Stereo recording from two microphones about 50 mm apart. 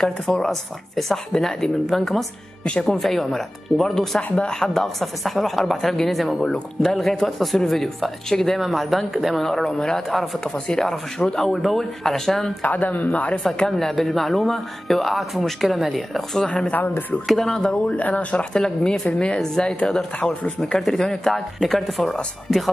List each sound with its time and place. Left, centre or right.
0.0 s speech: centre
4.2 s speech: centre
10.4 s speech: centre
12.6 s speech: left
13.4 s speech: centre
16.4 s speech: left; by 22.7 s centre